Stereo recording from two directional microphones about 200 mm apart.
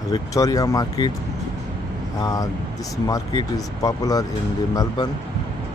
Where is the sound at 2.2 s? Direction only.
15° left (ahead or behind).